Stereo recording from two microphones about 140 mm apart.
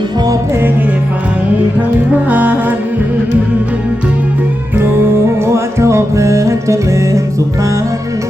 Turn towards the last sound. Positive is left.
turn(degrees=-20)  # may be behind; listen again after turning